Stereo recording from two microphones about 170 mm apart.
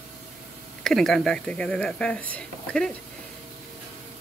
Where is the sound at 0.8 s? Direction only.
Centre (ahead or behind).